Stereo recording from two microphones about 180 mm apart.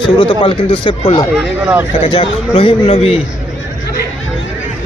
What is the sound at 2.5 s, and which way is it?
Speech, 30° left (ahead or behind).